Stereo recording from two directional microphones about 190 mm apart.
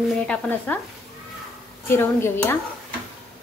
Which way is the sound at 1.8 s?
15° left (ahead or behind).